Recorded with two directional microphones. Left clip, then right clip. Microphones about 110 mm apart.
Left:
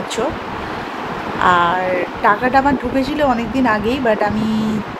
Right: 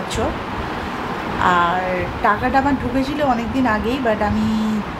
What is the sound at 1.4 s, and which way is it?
A woman's voice, 40° left (ahead or behind).